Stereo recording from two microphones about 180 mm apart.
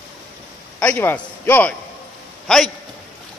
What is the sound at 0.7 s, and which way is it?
A man's voice, 10° left (ahead or behind).